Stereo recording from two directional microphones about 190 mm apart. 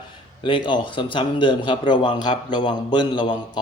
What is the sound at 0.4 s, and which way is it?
A man's voice, 25° left (ahead or behind).